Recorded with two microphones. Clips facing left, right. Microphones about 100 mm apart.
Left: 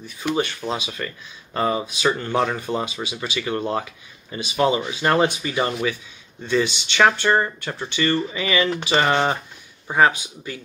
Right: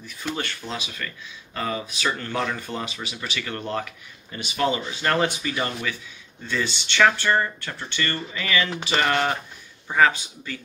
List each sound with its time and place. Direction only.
0.2 s speech: 15° left (ahead or behind)